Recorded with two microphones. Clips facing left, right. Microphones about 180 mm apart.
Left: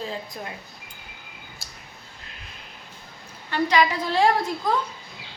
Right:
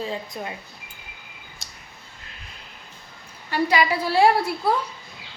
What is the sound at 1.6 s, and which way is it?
Clicking, centre (ahead or behind).